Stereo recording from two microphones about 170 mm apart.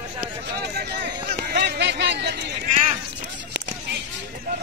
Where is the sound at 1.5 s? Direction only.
80° right.